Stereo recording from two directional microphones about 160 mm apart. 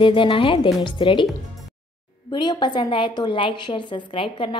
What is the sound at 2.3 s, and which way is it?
A woman's voice, 30° left (ahead or behind).